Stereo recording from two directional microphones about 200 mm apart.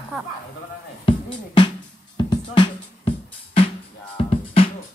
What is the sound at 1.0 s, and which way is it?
Music, 25° left (ahead or behind).